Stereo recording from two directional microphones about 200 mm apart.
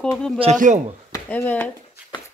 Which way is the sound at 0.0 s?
5° left (ahead or behind).